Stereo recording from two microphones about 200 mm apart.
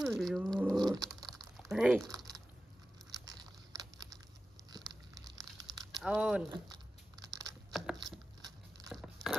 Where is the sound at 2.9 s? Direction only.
20° right (ahead or behind).